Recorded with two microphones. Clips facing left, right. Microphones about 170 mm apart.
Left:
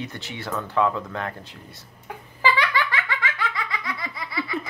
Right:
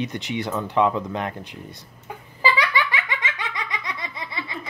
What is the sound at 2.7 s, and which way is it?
Laughter, 15° right (ahead or behind).